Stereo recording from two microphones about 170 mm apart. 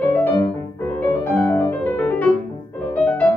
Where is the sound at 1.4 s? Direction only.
15° left (ahead or behind).